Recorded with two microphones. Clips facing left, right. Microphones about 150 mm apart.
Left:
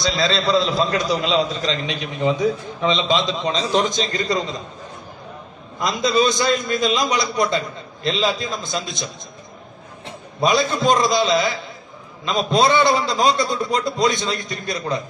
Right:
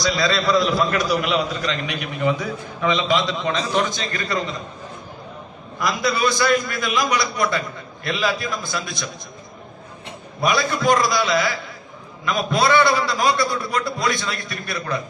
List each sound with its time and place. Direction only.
0.0 s a man's voice: 25° left (ahead or behind)
5.8 s a man's voice: 20° left (ahead or behind)
10.4 s a man's voice: 20° left (ahead or behind)